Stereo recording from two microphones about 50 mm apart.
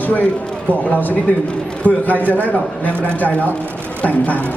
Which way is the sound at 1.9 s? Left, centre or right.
Left.